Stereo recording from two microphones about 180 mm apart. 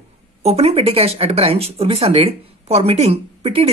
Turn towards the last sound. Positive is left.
turn(degrees=-35)  # may be behind; listen again after turning